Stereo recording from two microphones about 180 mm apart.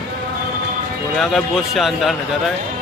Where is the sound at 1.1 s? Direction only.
Centre (ahead or behind).